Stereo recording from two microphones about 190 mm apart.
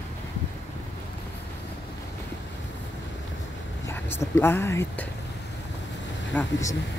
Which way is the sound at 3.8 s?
15° left (ahead or behind).